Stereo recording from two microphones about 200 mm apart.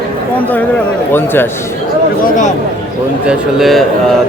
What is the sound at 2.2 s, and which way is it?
Speech, 40° left (ahead or behind).